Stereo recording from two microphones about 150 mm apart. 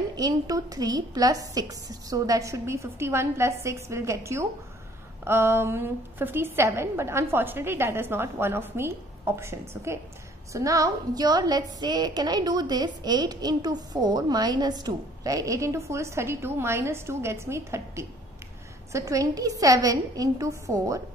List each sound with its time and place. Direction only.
0.1 s a woman's voice: 25° right (ahead or behind)